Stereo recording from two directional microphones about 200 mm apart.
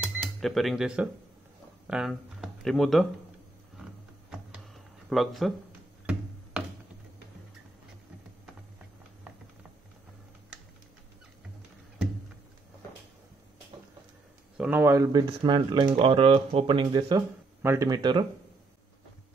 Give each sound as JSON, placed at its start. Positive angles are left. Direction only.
{"t": 0.4, "sound": "speech", "side_deg": 0}
{"t": 5.1, "sound": "speech", "side_deg": 0}
{"t": 14.6, "sound": "speech", "side_deg": -10}